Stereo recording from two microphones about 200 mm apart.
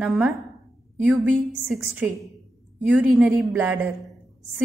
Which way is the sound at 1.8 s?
10° right (ahead or behind).